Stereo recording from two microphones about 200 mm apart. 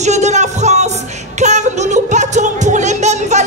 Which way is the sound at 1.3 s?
35° right (ahead or behind).